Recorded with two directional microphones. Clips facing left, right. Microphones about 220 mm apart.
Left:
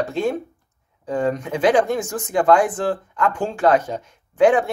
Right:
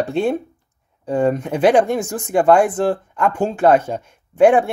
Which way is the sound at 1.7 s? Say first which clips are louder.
Right 3 dB; 10° right (ahead or behind).